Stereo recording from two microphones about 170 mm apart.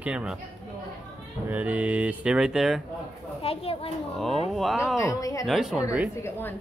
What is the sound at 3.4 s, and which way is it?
Speech, 35° left (ahead or behind).